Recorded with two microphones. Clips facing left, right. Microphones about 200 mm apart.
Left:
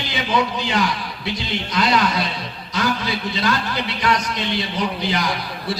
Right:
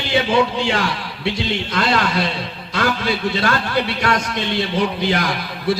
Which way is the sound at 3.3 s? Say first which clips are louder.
Right 3 dB; 50° right (ahead or behind).